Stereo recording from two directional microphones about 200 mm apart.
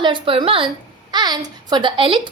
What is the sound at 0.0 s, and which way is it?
A woman's voice, 25° right (ahead or behind).